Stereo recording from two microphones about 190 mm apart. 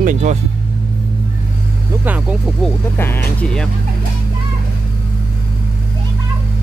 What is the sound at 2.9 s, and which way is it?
Speech, 10° left (ahead or behind).